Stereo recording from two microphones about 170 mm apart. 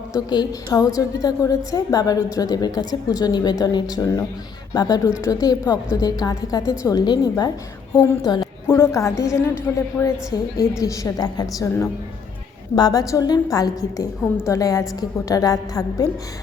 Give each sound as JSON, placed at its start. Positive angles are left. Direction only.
{"t": 0.1, "sound": "a woman's voice", "side_deg": 20}